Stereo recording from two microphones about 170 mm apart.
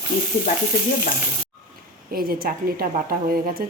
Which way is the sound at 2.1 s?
60° right (ahead or behind).